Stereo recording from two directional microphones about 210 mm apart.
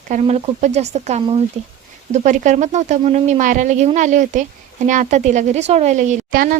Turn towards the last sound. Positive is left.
turn(degrees=-40)  # may be behind; listen again after turning